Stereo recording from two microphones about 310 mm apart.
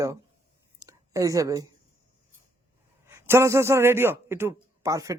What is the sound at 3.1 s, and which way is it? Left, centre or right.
A man's voice, centre.